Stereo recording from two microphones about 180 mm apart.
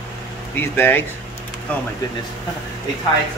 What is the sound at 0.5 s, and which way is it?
Speech, 10° left (ahead or behind).